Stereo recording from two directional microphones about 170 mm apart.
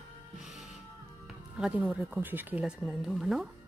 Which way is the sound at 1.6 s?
5° right (ahead or behind).